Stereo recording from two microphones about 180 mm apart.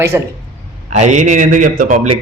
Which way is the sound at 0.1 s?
15° right (ahead or behind).